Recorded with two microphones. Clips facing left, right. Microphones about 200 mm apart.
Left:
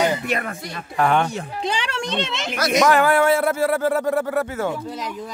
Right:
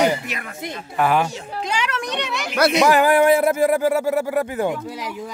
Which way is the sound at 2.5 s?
60° right (ahead or behind).